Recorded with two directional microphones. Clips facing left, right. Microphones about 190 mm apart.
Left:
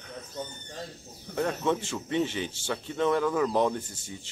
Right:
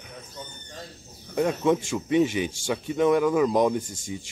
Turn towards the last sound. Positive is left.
turn(degrees=-10)  # may be behind; listen again after turning